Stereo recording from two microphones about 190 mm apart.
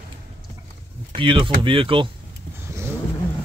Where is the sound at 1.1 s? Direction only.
25° right (ahead or behind).